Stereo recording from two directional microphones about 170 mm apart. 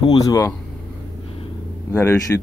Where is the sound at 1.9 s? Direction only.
15° left (ahead or behind).